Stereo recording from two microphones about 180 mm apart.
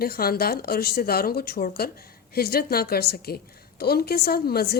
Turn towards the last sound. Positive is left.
turn(degrees=60)  # may be behind; listen again after turning